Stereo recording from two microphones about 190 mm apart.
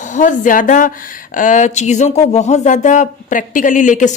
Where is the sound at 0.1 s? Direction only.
40° left (ahead or behind).